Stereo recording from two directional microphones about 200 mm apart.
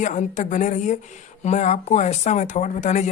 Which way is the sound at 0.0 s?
40° left (ahead or behind).